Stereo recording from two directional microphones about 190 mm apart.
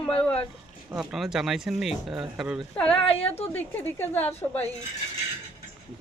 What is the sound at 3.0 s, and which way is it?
Speech, 30° left (ahead or behind).